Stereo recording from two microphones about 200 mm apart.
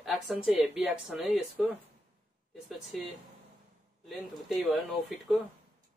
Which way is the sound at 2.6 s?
Centre (ahead or behind).